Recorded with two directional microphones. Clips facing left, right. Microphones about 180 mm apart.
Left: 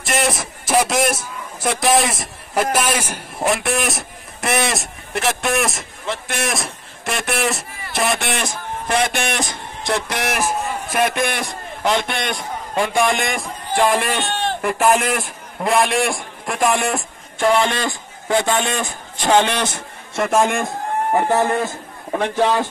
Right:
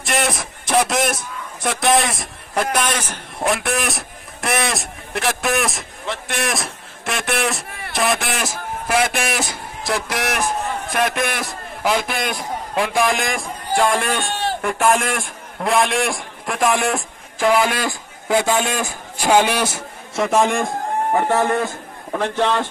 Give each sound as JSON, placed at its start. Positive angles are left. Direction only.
{"t": 0.0, "sound": "a man's voice", "side_deg": 0}
{"t": 21.1, "sound": "a man's voice", "side_deg": 15}